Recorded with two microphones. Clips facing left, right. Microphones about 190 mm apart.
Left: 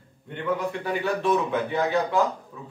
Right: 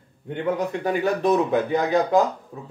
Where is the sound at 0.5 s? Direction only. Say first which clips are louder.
Right 4 dB; 40° right (ahead or behind).